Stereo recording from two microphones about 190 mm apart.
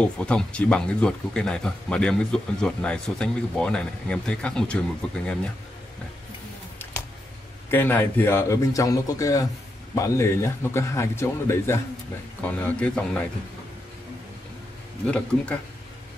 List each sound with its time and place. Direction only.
0.0 s speech: 5° left (ahead or behind)
7.7 s a man's voice: 10° left (ahead or behind)
15.0 s a man's voice: 5° left (ahead or behind)